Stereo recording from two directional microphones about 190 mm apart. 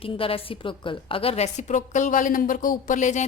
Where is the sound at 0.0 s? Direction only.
30° left (ahead or behind).